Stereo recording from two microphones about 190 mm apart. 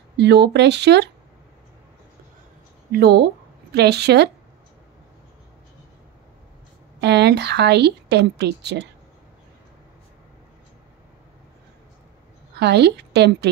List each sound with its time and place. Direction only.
0.2 s speech: 65° right (ahead or behind)
2.9 s speech: 55° right (ahead or behind)
7.0 s speech: 65° right (ahead or behind)
12.5 s a woman's voice: 60° right (ahead or behind)